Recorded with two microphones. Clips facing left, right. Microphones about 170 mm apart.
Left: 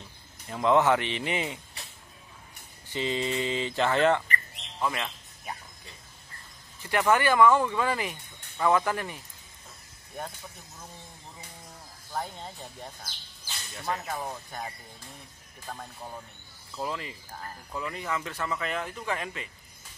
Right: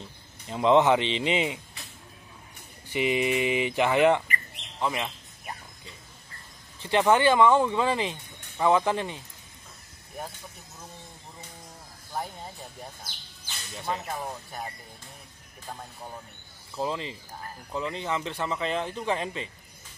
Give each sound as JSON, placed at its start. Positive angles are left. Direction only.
{"t": 0.5, "sound": "speech", "side_deg": -20}
{"t": 2.9, "sound": "speech", "side_deg": -15}
{"t": 6.8, "sound": "speech", "side_deg": -25}
{"t": 12.1, "sound": "speech", "side_deg": -10}
{"t": 14.0, "sound": "speech", "side_deg": -5}
{"t": 16.7, "sound": "speech", "side_deg": -20}